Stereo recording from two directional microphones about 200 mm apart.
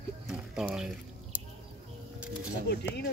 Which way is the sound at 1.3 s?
10° right (ahead or behind).